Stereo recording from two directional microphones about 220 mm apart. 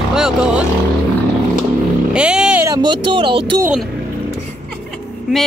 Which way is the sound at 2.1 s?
5° right (ahead or behind).